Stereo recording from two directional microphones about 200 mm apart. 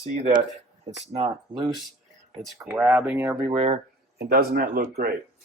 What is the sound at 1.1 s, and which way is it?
Speech, 30° right (ahead or behind).